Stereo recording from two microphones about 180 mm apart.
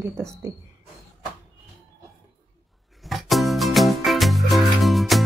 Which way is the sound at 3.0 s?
Centre (ahead or behind).